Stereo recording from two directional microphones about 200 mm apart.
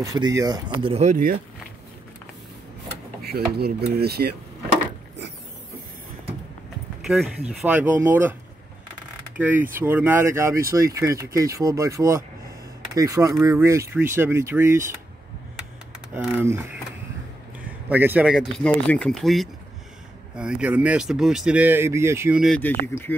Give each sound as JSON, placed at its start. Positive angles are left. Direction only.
{"t": 0.0, "sound": "speech", "side_deg": -20}
{"t": 3.3, "sound": "speech", "side_deg": -50}
{"t": 7.1, "sound": "speech", "side_deg": 0}
{"t": 9.4, "sound": "speech", "side_deg": -10}
{"t": 16.1, "sound": "speech", "side_deg": -10}
{"t": 17.8, "sound": "speech", "side_deg": -10}
{"t": 22.4, "sound": "speech", "side_deg": 5}